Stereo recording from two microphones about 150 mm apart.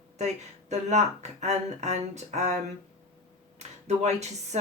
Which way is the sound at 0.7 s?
50° right (ahead or behind).